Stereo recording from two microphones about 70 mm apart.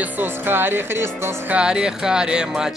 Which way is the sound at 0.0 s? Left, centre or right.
Right.